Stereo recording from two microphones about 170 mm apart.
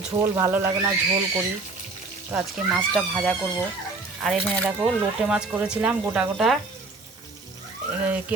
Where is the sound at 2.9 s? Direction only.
5° left (ahead or behind).